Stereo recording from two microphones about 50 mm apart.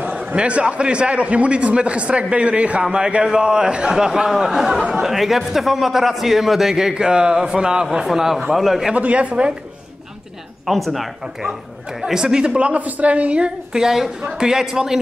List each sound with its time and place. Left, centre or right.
0.4 s a man's voice: right; by 8.9 s centre
8.9 s a man's voice: right
10.7 s speech: centre
12.0 s a man's voice: centre
13.7 s a man's voice: centre